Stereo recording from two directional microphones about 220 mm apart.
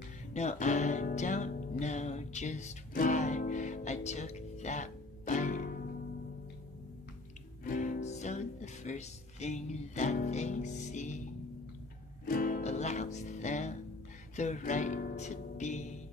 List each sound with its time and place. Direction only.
0.3 s music: 30° left (ahead or behind)
7.6 s music: 35° left (ahead or behind)
12.3 s music: 40° left (ahead or behind)